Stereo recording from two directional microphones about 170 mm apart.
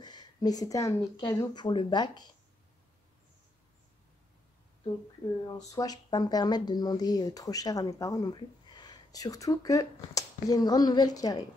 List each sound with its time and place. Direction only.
0.0 s speech: 25° left (ahead or behind)
5.5 s speech: 20° left (ahead or behind)